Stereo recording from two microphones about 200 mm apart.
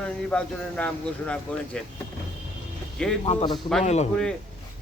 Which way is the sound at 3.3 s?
25° left (ahead or behind).